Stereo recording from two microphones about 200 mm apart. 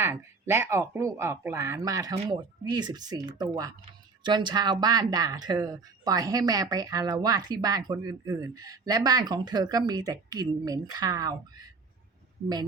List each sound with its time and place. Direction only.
0.0 s speech: 10° right (ahead or behind)